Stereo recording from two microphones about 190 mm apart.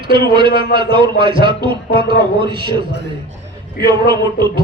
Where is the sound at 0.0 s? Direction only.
25° right (ahead or behind).